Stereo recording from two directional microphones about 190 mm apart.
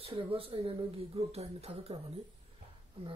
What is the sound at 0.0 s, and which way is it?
Speech, 30° right (ahead or behind).